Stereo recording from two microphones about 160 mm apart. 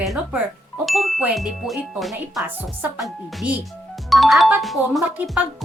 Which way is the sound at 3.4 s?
10° right (ahead or behind).